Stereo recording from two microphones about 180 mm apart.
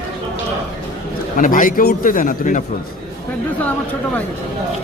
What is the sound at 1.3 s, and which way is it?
A man's voice, 50° left (ahead or behind).